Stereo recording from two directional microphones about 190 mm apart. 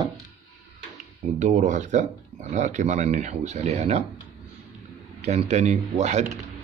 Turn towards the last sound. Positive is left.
turn(degrees=-35)  # may be behind; listen again after turning